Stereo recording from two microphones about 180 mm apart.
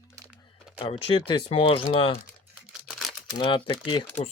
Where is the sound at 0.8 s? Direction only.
30° left (ahead or behind).